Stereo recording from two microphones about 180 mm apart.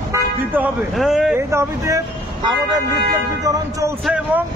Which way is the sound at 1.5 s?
15° right (ahead or behind).